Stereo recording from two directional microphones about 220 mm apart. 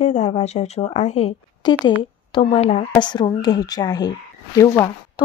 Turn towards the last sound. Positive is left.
turn(degrees=15)  # may be behind; listen again after turning